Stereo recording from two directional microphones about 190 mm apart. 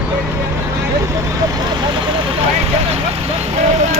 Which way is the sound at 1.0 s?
15° right (ahead or behind).